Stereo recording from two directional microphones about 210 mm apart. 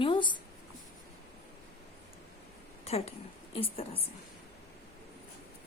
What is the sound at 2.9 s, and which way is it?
Speech, 30° left (ahead or behind).